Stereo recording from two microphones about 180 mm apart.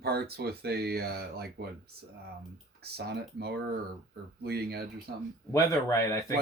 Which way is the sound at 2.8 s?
65° right (ahead or behind).